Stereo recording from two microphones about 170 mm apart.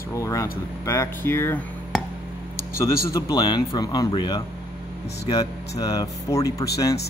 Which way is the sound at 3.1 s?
25° left (ahead or behind).